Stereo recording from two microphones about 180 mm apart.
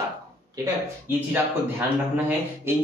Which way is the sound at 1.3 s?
10° right (ahead or behind).